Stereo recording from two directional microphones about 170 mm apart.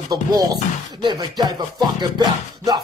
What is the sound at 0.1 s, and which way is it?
Music, 25° right (ahead or behind).